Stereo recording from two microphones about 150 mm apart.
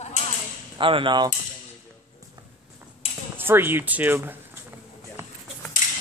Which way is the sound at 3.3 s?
15° right (ahead or behind).